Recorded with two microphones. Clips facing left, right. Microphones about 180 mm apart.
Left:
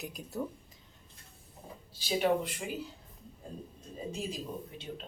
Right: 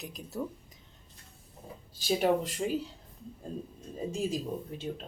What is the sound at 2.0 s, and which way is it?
Speech, 45° right (ahead or behind).